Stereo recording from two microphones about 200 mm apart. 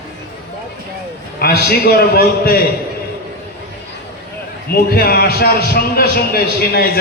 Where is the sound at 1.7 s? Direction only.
50° left (ahead or behind).